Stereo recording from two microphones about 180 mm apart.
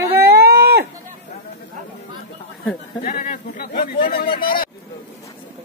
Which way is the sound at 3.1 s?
45° left (ahead or behind).